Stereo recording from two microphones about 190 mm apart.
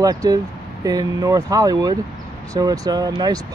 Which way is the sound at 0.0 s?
20° right (ahead or behind).